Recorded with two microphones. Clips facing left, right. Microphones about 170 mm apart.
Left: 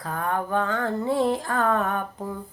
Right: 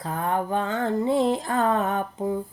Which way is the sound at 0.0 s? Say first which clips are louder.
Right 1 dB; 20° right (ahead or behind).